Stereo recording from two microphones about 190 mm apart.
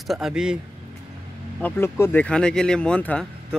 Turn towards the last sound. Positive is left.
turn(degrees=5)  # may be behind; listen again after turning